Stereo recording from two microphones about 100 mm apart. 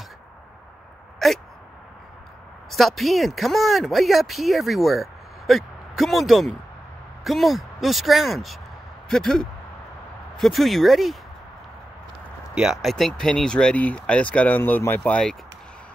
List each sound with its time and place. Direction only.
1.2 s speech: centre (ahead or behind)
2.7 s speech: centre (ahead or behind)
12.5 s speech: 5° right (ahead or behind)
12.9 s speech: 5° left (ahead or behind)